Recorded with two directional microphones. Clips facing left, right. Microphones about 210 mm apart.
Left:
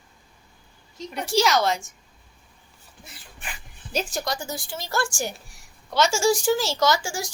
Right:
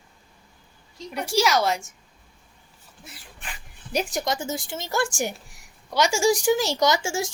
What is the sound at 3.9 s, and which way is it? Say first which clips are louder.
Speech: right 2 dB; 15° right (ahead or behind).